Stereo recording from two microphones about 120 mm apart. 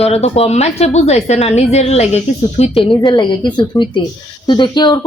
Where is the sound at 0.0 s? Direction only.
60° left (ahead or behind).